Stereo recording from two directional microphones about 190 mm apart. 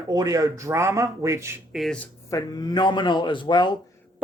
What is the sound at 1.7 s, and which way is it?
Speech, centre (ahead or behind).